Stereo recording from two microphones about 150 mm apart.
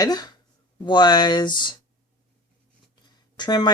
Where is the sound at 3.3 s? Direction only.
30° left (ahead or behind).